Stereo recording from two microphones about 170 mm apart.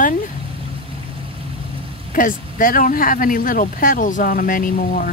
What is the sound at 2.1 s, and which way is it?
Speech, 55° left (ahead or behind).